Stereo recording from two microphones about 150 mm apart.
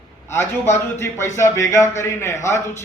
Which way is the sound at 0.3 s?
15° left (ahead or behind).